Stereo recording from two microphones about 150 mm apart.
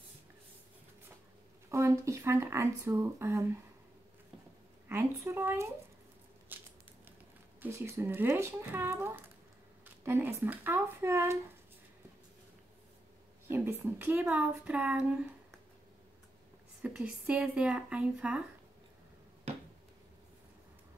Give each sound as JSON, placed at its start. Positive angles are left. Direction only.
{"t": 1.7, "sound": "speech", "side_deg": -20}
{"t": 4.8, "sound": "a woman's voice", "side_deg": -15}
{"t": 6.5, "sound": "scissors", "side_deg": -15}
{"t": 7.6, "sound": "a woman's voice", "side_deg": -15}
{"t": 13.5, "sound": "a woman's voice", "side_deg": -15}
{"t": 16.8, "sound": "a woman's voice", "side_deg": -10}